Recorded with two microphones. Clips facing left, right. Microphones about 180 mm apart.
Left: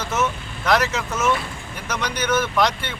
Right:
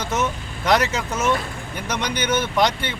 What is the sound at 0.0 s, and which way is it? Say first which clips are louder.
Speech: even; 30° right (ahead or behind).